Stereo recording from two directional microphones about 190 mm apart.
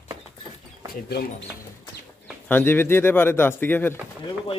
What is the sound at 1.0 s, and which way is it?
Speech, 55° left (ahead or behind).